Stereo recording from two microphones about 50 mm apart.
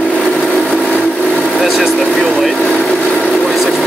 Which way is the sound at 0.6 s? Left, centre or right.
Left.